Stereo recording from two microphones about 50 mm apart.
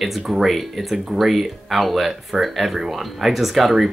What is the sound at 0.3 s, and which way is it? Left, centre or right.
Speech, centre.